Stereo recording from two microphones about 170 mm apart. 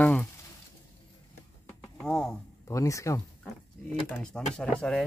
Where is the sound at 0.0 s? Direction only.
10° left (ahead or behind).